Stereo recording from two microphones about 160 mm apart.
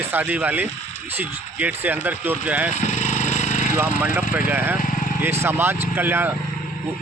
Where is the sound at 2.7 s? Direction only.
50° left (ahead or behind).